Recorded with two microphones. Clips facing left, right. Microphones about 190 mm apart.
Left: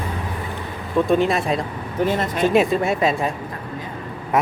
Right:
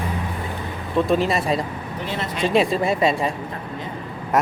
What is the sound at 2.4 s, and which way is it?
Speech, centre (ahead or behind).